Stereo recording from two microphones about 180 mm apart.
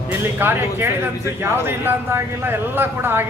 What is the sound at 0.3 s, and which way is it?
A man's voice, 10° right (ahead or behind).